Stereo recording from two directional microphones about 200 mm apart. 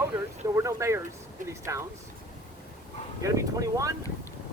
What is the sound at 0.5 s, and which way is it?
Speech, 15° right (ahead or behind).